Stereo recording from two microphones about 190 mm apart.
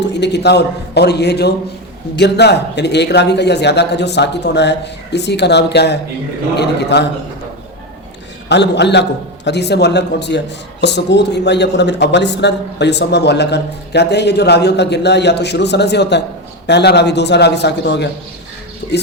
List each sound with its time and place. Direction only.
0.0 s a man's voice: 65° left (ahead or behind)
8.4 s a man's voice: 65° left (ahead or behind)